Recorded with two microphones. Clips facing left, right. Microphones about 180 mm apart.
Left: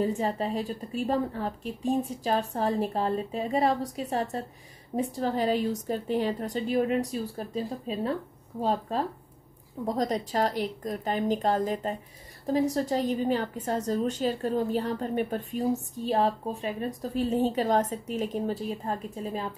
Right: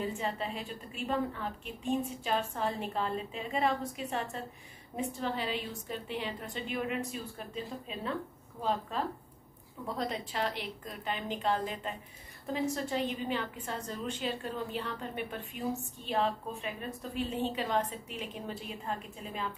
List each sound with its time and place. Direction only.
0.0 s a woman's voice: 40° left (ahead or behind)